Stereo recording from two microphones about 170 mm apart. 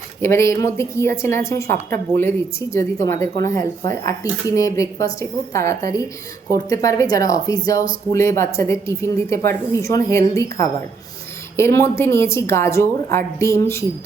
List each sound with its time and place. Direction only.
0.2 s a woman's voice: 15° left (ahead or behind)